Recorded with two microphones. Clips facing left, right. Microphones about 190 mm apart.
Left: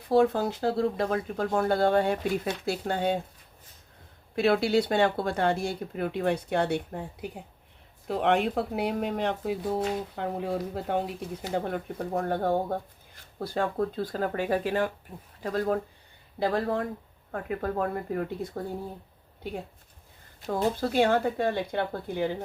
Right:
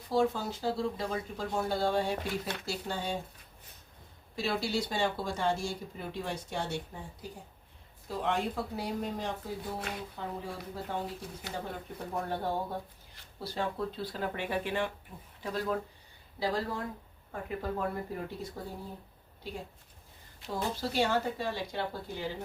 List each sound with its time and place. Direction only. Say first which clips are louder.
0.1 s speech: left 6 dB; 60° left (ahead or behind)
4.4 s speech: left 9 dB; 60° left (ahead or behind)